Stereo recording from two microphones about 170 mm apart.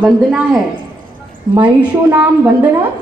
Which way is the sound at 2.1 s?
20° right (ahead or behind).